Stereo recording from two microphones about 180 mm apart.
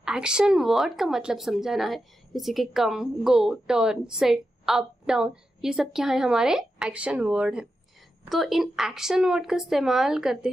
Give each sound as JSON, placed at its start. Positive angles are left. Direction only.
{"t": 0.0, "sound": "speech", "side_deg": -5}